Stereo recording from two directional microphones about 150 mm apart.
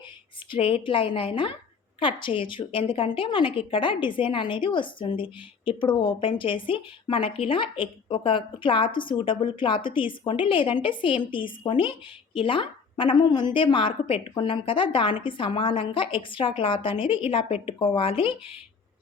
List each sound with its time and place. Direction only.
0.5 s speech: 35° left (ahead or behind)